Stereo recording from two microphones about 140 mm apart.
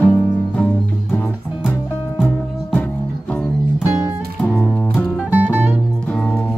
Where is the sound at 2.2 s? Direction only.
10° left (ahead or behind).